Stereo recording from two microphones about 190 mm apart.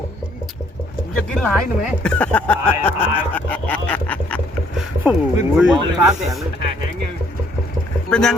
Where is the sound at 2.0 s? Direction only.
5° left (ahead or behind).